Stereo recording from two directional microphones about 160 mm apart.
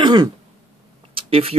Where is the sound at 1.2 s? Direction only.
35° right (ahead or behind).